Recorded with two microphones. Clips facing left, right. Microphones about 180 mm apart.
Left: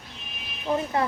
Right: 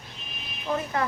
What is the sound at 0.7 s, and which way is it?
Speech, 20° left (ahead or behind).